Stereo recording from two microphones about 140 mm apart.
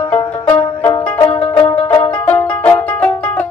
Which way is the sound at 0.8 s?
25° left (ahead or behind).